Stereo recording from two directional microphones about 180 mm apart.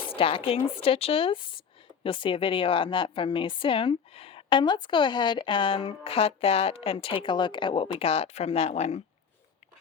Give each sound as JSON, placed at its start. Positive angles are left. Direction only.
{"t": 0.0, "sound": "a woman's voice", "side_deg": 30}